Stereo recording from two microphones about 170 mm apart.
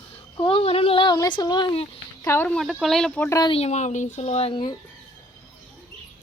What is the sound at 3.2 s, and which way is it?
Speech, 20° left (ahead or behind).